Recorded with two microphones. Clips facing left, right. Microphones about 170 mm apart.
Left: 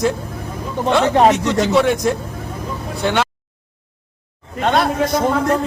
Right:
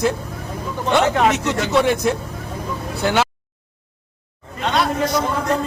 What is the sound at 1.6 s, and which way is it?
Speech, centre (ahead or behind).